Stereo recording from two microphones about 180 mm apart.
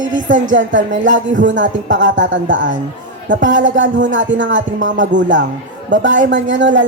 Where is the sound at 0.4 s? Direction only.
90° right.